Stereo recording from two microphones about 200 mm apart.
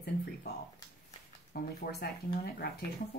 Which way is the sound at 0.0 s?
50° left (ahead or behind).